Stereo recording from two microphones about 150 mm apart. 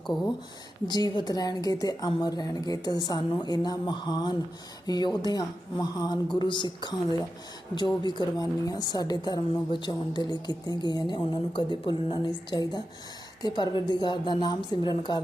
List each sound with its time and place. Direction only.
0.9 s a woman's voice: 30° left (ahead or behind)